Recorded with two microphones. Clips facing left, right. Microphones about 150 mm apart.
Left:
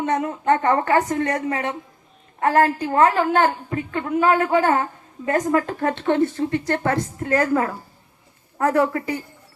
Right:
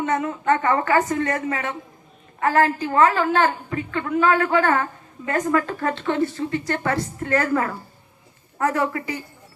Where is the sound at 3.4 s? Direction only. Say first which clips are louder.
Left 1 dB; 30° left (ahead or behind).